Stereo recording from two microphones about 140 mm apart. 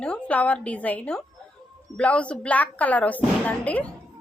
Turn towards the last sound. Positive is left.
turn(degrees=10)  # may be behind; listen again after turning